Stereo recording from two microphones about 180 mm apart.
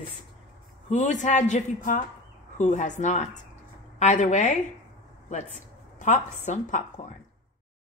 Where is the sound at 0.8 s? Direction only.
40° left (ahead or behind).